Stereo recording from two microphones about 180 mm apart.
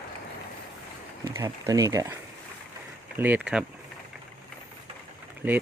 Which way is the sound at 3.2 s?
10° right (ahead or behind).